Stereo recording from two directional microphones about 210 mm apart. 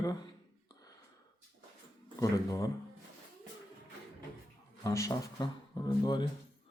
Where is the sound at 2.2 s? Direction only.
15° left (ahead or behind).